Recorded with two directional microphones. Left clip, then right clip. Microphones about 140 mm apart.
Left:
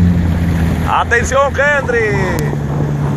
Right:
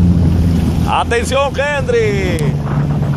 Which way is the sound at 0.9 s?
65° right (ahead or behind).